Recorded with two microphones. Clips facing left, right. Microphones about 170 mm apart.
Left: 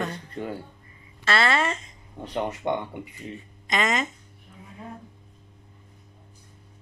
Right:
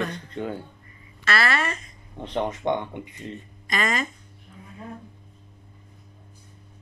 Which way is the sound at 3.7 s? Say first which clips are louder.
Left 1 dB; 20° left (ahead or behind).